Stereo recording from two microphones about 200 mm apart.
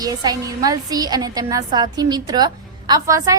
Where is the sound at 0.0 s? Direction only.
20° right (ahead or behind).